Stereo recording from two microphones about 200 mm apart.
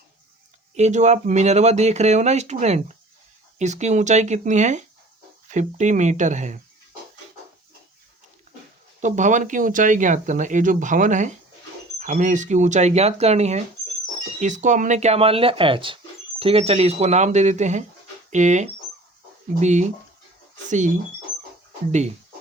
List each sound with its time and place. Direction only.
0.8 s speech: 35° right (ahead or behind)
9.0 s speech: 40° right (ahead or behind)